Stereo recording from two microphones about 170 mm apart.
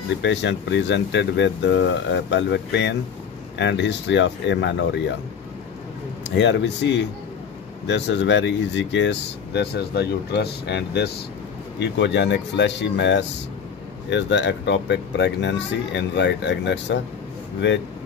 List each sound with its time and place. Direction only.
0.2 s speech: 90° left
6.3 s speech: 90° left